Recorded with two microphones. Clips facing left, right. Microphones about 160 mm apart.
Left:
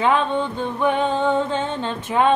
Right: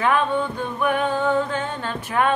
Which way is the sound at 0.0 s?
25° left (ahead or behind).